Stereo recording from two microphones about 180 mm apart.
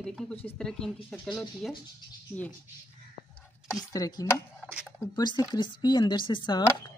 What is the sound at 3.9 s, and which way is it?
Speech, 20° left (ahead or behind).